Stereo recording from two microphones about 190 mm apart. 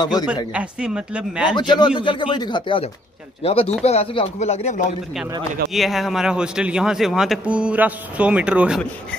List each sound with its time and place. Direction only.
0.0 s speech: 20° left (ahead or behind)
0.5 s a man's voice: 5° right (ahead or behind)
1.5 s speech: 25° left (ahead or behind)
5.7 s a man's voice: centre (ahead or behind)